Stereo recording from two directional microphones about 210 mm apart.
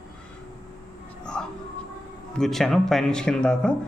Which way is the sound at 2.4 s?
Centre (ahead or behind).